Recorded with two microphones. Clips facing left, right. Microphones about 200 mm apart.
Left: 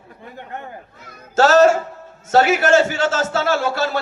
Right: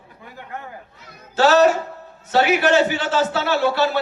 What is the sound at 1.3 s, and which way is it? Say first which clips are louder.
A man's voice: left 2 dB; 45° left (ahead or behind).